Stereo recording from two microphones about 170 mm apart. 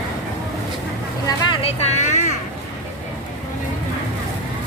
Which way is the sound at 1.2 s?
30° left (ahead or behind).